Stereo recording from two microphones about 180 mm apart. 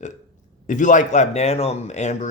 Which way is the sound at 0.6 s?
45° left (ahead or behind).